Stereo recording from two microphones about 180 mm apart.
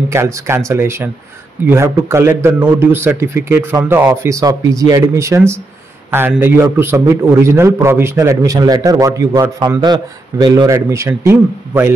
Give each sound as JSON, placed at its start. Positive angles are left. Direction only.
{"t": 0.1, "sound": "a man's voice", "side_deg": -15}